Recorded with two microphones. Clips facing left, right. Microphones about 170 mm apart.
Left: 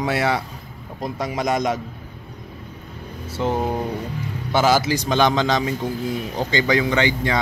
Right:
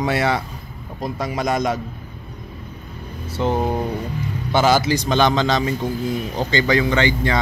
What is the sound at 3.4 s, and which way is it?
Speech, 5° left (ahead or behind).